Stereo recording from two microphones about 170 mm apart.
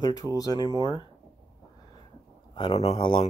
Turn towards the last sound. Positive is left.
turn(degrees=30)  # may be behind; listen again after turning